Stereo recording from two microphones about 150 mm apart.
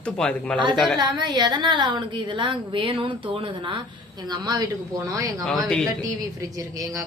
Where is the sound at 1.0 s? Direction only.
30° right (ahead or behind).